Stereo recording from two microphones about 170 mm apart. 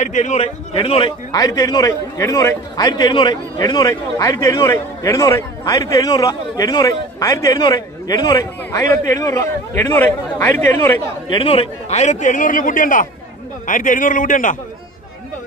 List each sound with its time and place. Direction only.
0.0 s a man's voice: 45° left (ahead or behind); by 11.0 s 15° left (ahead or behind)
11.2 s a man's voice: 30° left (ahead or behind); by 14.6 s 50° left (ahead or behind)